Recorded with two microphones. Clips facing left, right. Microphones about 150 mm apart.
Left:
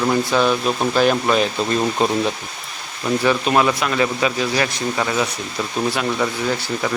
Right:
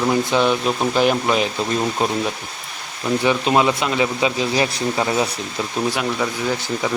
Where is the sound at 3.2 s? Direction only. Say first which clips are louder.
Even; 20° right (ahead or behind).